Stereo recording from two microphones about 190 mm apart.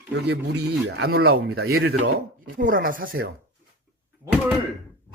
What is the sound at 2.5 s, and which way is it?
Speech, 45° right (ahead or behind).